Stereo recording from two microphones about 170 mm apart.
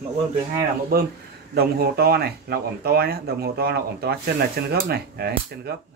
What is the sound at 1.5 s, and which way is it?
Speech, 65° right (ahead or behind).